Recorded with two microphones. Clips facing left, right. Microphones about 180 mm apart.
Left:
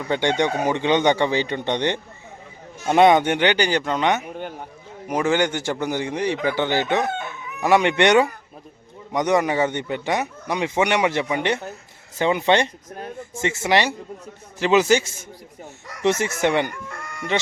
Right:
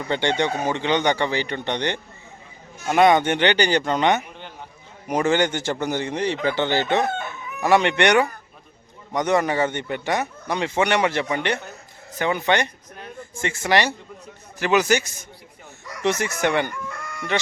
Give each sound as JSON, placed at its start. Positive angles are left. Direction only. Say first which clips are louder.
{"t": 0.1, "sound": "a man's voice", "louder": "left 2 dB", "side_deg": 15}
{"t": 4.3, "sound": "a sound", "louder": "left 9 dB", "side_deg": 50}
{"t": 5.0, "sound": "a man's voice", "louder": "even", "side_deg": 5}